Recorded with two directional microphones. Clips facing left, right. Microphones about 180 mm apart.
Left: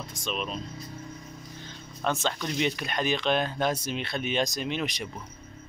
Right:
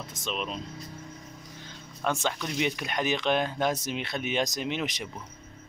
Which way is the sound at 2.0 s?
10° right (ahead or behind).